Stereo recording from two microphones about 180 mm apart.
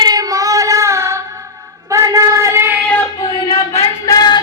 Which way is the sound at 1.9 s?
15° right (ahead or behind).